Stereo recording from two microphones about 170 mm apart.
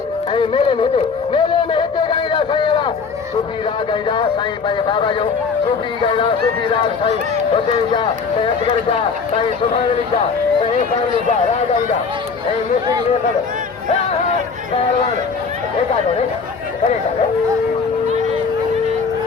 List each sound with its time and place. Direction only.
0.3 s a man's voice: 30° left (ahead or behind)
4.9 s a man's voice: 30° left (ahead or behind)
8.4 s speech: 30° left (ahead or behind)